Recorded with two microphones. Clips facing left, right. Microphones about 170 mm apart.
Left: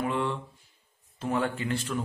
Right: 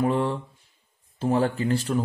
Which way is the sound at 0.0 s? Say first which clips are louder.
Right 6 dB; 35° right (ahead or behind).